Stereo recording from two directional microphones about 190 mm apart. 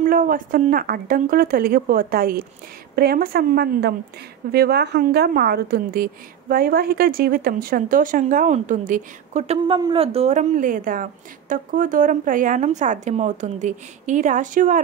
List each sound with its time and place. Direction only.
0.0 s a woman's voice: 45° right (ahead or behind)